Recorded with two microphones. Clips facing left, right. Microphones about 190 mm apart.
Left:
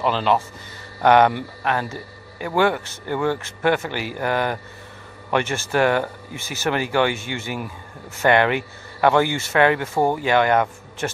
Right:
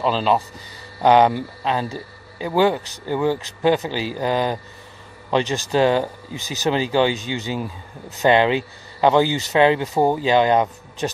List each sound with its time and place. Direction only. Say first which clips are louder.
0.0 s speech: right 1 dB; 15° right (ahead or behind)